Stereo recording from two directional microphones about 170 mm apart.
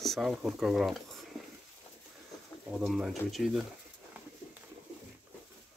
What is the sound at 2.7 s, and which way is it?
Speech, 5° right (ahead or behind).